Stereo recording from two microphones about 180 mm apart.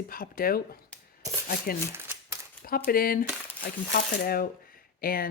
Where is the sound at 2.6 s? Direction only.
55° left (ahead or behind).